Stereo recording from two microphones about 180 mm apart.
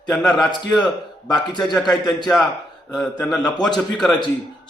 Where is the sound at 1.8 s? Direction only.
25° left (ahead or behind).